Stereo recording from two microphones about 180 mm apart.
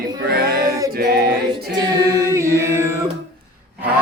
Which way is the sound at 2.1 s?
15° right (ahead or behind).